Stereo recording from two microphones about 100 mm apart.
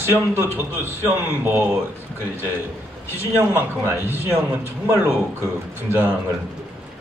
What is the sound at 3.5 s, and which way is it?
A man's voice, 20° right (ahead or behind).